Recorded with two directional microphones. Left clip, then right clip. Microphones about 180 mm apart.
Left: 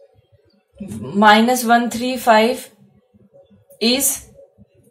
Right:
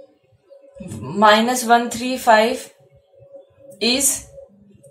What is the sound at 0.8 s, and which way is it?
A woman's voice, 30° left (ahead or behind).